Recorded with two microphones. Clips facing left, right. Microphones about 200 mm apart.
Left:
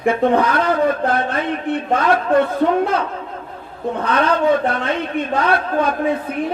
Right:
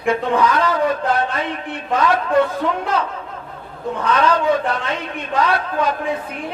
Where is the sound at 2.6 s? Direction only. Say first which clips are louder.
Left 5 dB; 45° left (ahead or behind).